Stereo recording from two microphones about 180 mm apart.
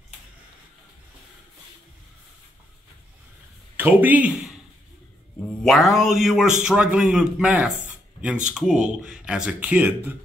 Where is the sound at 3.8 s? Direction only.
10° right (ahead or behind).